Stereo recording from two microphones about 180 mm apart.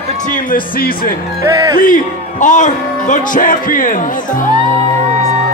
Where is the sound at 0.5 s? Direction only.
50° left (ahead or behind).